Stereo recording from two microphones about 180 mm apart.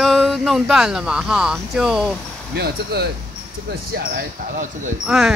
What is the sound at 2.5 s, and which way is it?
Speech, 60° right (ahead or behind).